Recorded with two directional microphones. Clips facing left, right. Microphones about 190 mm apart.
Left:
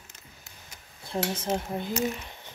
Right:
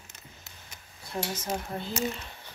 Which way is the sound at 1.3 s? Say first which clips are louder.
Left 4 dB; 30° left (ahead or behind).